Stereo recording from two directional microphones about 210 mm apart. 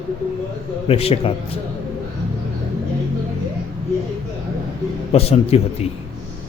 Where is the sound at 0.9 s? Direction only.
30° left (ahead or behind).